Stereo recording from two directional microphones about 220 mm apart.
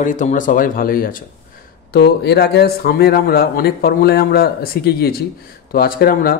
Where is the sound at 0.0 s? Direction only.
35° left (ahead or behind).